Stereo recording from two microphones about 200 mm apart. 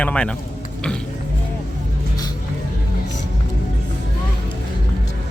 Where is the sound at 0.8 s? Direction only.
5° left (ahead or behind).